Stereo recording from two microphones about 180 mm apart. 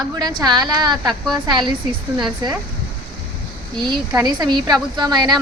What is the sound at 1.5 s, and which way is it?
A woman's voice, 25° right (ahead or behind).